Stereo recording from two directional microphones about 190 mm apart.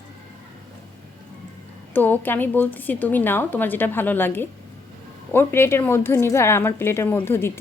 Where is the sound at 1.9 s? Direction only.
10° left (ahead or behind).